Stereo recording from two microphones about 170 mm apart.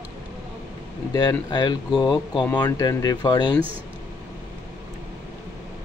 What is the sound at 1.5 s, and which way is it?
Speech, 25° left (ahead or behind).